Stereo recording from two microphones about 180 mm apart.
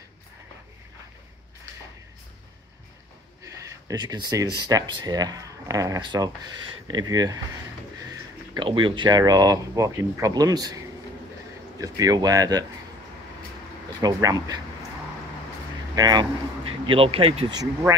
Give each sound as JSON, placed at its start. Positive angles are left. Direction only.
{"t": 3.4, "sound": "speech", "side_deg": -20}
{"t": 8.5, "sound": "speech", "side_deg": -25}
{"t": 11.8, "sound": "speech", "side_deg": -20}
{"t": 14.0, "sound": "speech", "side_deg": -20}
{"t": 15.9, "sound": "speech", "side_deg": -20}